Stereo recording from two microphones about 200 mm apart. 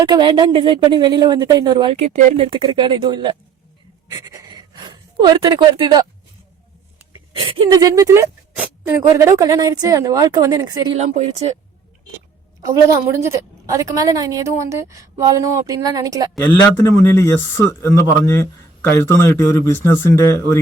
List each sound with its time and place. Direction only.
0.0 s speech: 20° right (ahead or behind)
7.7 s speech: 15° right (ahead or behind)
10.9 s speech: 35° right (ahead or behind)
12.6 s speech: 15° right (ahead or behind)
17.0 s speech: 15° left (ahead or behind)